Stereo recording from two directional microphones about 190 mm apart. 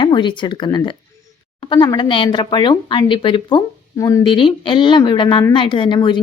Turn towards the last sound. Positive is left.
turn(degrees=25)  # may be behind; listen again after turning